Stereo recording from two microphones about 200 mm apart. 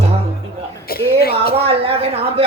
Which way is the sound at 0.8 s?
50° left (ahead or behind).